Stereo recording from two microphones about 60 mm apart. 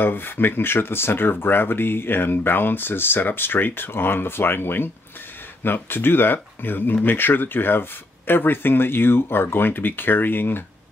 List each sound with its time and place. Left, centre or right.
0.0 s speech: left